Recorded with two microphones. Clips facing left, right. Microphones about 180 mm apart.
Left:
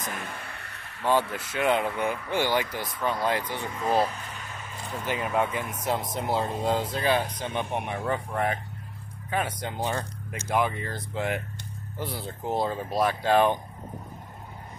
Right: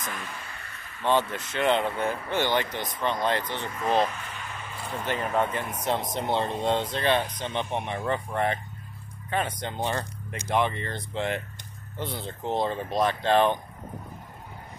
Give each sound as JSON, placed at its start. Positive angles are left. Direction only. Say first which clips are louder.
{"t": 0.2, "sound": "vehicle", "louder": "left 1 dB", "side_deg": 55}
{"t": 1.0, "sound": "speech", "louder": "even", "side_deg": 10}
{"t": 4.1, "sound": "a sound", "louder": "right 1 dB", "side_deg": 40}
{"t": 5.0, "sound": "speech", "louder": "even", "side_deg": 10}